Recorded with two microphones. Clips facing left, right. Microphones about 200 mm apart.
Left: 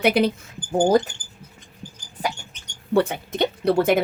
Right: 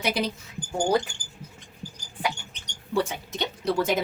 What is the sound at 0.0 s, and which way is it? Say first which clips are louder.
Speech: left 8 dB; 60° left (ahead or behind).